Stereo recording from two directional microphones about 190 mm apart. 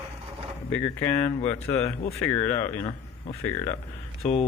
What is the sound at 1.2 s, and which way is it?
Speech, 35° left (ahead or behind).